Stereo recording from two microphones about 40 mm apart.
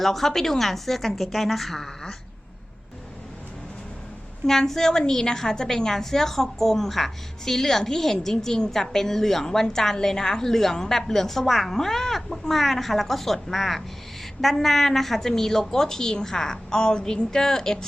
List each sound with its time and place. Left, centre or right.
0.0 s a woman's voice: centre
4.4 s a woman's voice: centre